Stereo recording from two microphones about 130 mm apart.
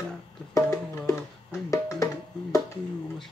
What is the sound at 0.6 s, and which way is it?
Music, 25° left (ahead or behind).